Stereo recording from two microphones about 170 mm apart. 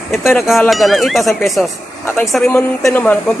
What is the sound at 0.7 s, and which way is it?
Speech, centre (ahead or behind).